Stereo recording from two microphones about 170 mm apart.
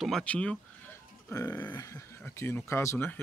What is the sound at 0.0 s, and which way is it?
Speech, 5° left (ahead or behind).